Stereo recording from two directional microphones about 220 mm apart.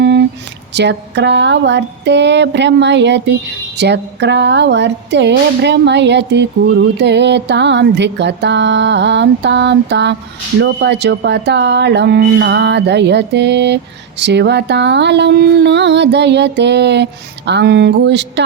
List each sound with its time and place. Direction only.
0.7 s speech: 50° right (ahead or behind)